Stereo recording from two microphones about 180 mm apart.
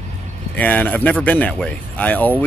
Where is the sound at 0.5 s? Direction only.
10° left (ahead or behind).